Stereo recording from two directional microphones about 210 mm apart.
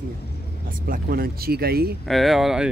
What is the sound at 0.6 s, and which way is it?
Speech, 40° right (ahead or behind).